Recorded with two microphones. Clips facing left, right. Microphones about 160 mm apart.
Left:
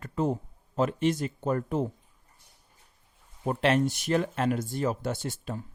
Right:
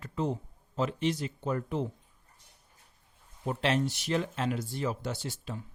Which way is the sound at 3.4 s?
55° left (ahead or behind).